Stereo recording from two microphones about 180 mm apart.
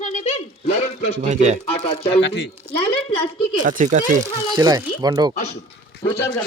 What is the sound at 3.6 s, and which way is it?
Speech, 45° right (ahead or behind).